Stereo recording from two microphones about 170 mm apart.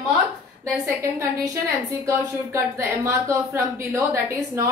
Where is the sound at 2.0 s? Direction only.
15° right (ahead or behind).